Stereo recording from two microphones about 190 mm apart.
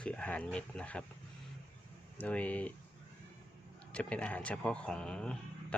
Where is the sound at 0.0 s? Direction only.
5° left (ahead or behind).